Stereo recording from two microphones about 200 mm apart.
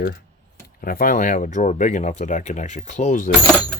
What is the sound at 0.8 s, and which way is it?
Speech, 45° left (ahead or behind).